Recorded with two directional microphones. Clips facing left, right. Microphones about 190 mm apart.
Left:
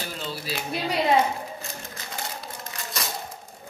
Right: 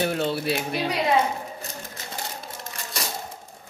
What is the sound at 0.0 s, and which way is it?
Speech, 65° right (ahead or behind).